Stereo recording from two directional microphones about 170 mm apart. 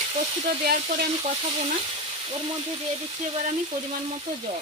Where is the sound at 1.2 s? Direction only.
35° right (ahead or behind).